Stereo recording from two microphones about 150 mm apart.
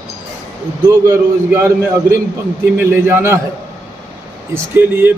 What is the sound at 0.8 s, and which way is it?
A man's voice, 20° right (ahead or behind).